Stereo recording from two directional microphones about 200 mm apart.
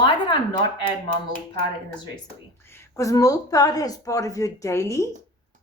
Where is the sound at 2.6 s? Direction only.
15° left (ahead or behind).